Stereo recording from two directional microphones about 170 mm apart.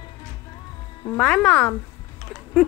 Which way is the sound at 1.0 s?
5° left (ahead or behind).